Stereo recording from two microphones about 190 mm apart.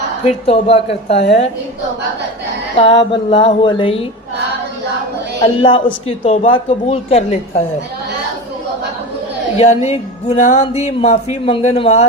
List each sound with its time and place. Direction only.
0.3 s speech: 30° left (ahead or behind)
2.7 s music: 30° left (ahead or behind)
5.4 s speech: 30° left (ahead or behind)
9.6 s speech: 35° left (ahead or behind)